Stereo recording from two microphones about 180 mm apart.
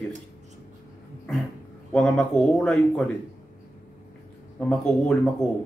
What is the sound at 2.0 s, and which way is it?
Speech, 5° left (ahead or behind).